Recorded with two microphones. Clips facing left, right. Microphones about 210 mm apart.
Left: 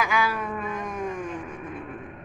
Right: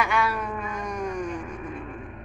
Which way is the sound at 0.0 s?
Centre (ahead or behind).